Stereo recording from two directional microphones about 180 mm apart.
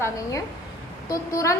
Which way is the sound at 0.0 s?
20° left (ahead or behind).